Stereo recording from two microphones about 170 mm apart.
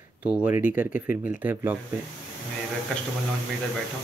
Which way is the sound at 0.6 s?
10° right (ahead or behind).